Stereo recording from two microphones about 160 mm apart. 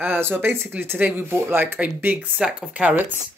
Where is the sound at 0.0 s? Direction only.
15° right (ahead or behind).